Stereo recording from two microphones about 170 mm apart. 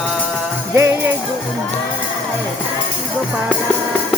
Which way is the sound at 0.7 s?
15° right (ahead or behind).